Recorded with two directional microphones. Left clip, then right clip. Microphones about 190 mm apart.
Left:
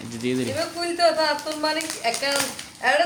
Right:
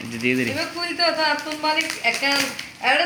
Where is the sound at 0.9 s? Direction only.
25° left (ahead or behind).